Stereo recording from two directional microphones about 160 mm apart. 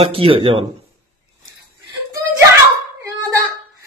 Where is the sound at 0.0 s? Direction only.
35° right (ahead or behind).